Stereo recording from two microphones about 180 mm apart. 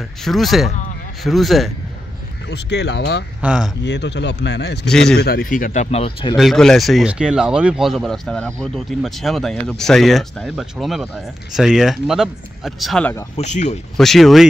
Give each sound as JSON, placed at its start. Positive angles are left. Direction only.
{"t": 0.2, "sound": "speech", "side_deg": 0}
{"t": 2.5, "sound": "speech", "side_deg": 70}
{"t": 3.3, "sound": "speech", "side_deg": -5}
{"t": 3.8, "sound": "speech", "side_deg": 75}
{"t": 4.8, "sound": "speech", "side_deg": 5}
{"t": 5.2, "sound": "speech", "side_deg": 55}
{"t": 6.3, "sound": "speech", "side_deg": 0}
{"t": 13.4, "sound": "speech", "side_deg": 40}
{"t": 13.9, "sound": "speech", "side_deg": 0}